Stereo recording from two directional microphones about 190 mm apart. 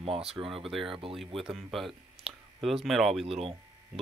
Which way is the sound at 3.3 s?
30° right (ahead or behind).